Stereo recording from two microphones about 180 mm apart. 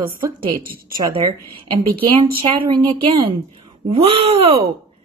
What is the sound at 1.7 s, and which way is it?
A woman's voice, 30° right (ahead or behind).